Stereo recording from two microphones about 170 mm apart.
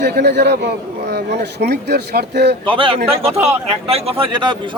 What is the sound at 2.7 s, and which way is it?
A man's voice, 30° right (ahead or behind).